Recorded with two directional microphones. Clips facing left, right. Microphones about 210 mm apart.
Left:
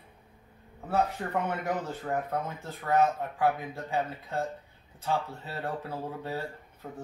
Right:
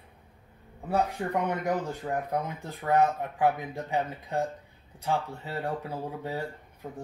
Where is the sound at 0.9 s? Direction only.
15° right (ahead or behind).